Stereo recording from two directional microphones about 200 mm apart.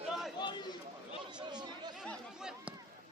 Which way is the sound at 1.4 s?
20° right (ahead or behind).